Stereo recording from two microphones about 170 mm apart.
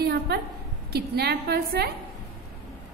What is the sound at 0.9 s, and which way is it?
Speech, 70° right (ahead or behind).